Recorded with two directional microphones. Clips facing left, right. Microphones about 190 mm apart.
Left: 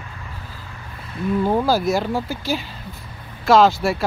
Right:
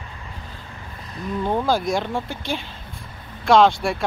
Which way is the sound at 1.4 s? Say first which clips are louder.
Left 2 dB; 5° left (ahead or behind).